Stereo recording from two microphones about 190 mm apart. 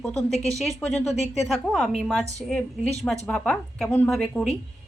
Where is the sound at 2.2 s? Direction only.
15° right (ahead or behind).